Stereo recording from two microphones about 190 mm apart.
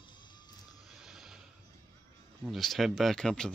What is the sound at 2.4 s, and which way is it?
Speech, centre (ahead or behind).